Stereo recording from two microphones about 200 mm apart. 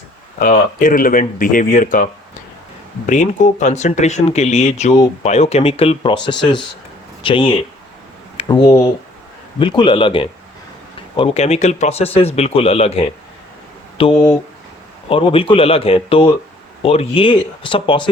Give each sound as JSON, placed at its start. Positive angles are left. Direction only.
{"t": 0.3, "sound": "speech", "side_deg": 45}
{"t": 3.1, "sound": "speech", "side_deg": 40}